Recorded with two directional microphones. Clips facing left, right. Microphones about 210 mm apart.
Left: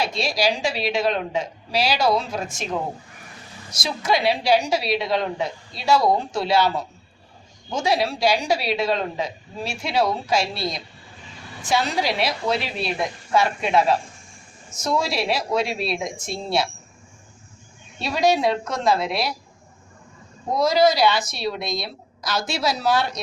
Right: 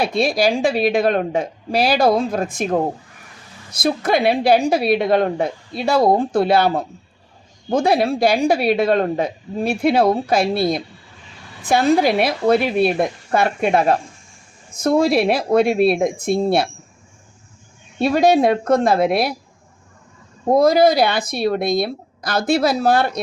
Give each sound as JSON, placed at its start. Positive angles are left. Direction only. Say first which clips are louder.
{"t": 0.0, "sound": "a woman's voice", "louder": "right 6 dB", "side_deg": -55}
{"t": 18.0, "sound": "a woman's voice", "louder": "right 6 dB", "side_deg": -55}
{"t": 20.5, "sound": "a woman's voice", "louder": "right 5 dB", "side_deg": -55}